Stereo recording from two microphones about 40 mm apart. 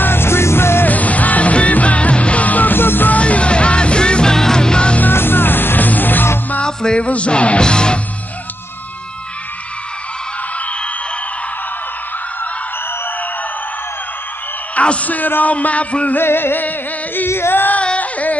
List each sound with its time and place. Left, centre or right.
0.0 s music: left
0.8 s music: left
2.7 s music: left
3.1 s music: left
5.1 s music: left
6.6 s music: left
14.8 s speech: left
15.5 s speech: left
16.2 s music: left
17.3 s female singing: left
17.9 s music: left